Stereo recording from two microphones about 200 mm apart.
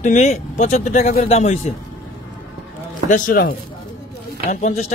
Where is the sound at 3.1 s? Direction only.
45° left (ahead or behind).